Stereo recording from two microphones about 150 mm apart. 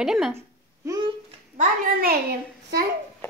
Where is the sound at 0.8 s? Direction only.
25° right (ahead or behind).